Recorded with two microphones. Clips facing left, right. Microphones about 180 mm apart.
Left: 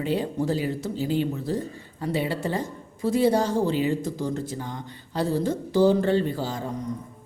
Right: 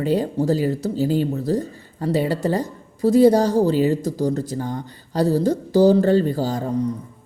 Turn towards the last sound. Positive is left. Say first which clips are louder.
# right 8 dB
turn(degrees=-35)  # may be behind; listen again after turning